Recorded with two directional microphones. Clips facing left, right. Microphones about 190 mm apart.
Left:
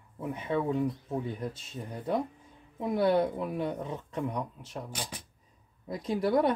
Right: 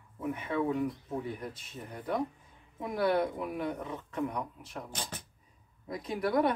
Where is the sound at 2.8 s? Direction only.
25° left (ahead or behind).